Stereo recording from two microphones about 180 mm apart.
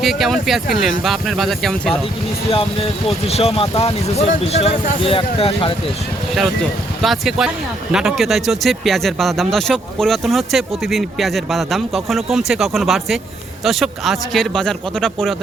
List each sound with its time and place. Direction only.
0.0 s speech: centre (ahead or behind)
3.2 s speech: 35° left (ahead or behind)
6.3 s speech: centre (ahead or behind)